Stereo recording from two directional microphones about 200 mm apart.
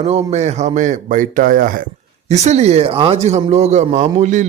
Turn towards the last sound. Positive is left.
turn(degrees=-35)  # may be behind; listen again after turning